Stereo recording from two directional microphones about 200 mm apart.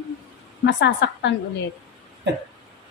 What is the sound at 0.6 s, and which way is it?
Speech, 60° left (ahead or behind).